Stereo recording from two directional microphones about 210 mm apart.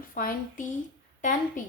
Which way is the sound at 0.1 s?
40° left (ahead or behind).